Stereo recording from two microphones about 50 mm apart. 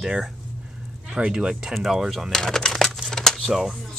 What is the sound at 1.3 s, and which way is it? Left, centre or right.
Speech, centre.